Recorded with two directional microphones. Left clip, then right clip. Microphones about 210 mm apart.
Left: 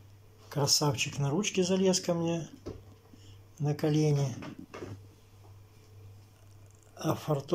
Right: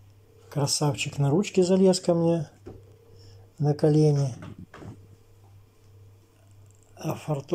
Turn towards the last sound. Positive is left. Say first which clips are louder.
# even
turn(degrees=-10)  # may be behind; listen again after turning